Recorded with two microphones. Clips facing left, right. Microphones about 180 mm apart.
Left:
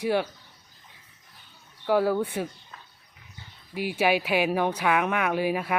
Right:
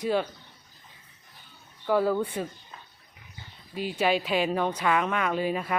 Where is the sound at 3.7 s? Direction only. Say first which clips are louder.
Left 2 dB; 5° left (ahead or behind).